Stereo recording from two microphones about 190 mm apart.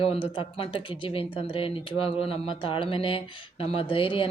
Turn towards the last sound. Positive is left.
turn(degrees=25)  # may be behind; listen again after turning